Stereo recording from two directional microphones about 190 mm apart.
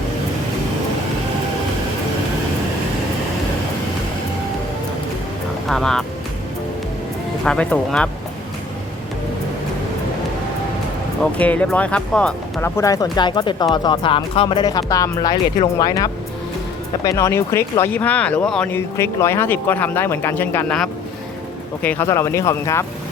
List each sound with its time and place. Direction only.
5.6 s speech: centre (ahead or behind)
7.4 s speech: 5° left (ahead or behind)
11.2 s speech: 10° left (ahead or behind)